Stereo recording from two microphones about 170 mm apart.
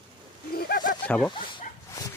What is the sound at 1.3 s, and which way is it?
Speech, 30° left (ahead or behind).